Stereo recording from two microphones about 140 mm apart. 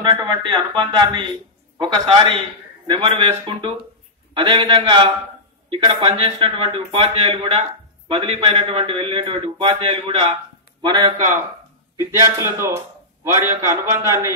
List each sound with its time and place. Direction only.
0.0 s a man's voice: 35° right (ahead or behind)
12.0 s a man's voice: 20° right (ahead or behind)